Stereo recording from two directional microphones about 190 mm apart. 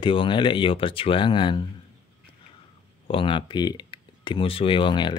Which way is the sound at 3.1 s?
25° left (ahead or behind).